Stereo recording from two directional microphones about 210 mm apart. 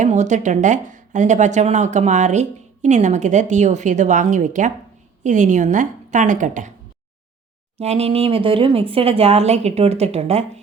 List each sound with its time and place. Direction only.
0.0 s speech: 35° right (ahead or behind)
7.8 s speech: 30° right (ahead or behind)